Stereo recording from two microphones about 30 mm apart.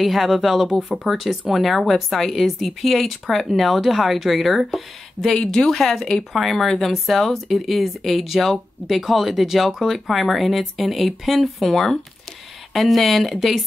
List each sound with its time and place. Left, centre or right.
0.0 s a woman's voice: centre
5.3 s a woman's voice: centre
11.7 s a woman's voice: centre
12.7 s speech: centre